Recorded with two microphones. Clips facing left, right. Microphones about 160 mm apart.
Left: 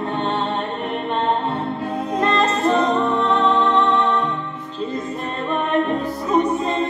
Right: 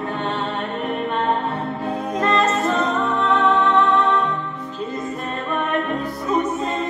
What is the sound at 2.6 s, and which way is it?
Music, 30° left (ahead or behind).